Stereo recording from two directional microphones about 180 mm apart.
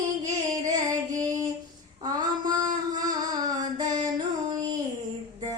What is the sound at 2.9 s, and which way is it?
Music, 20° right (ahead or behind).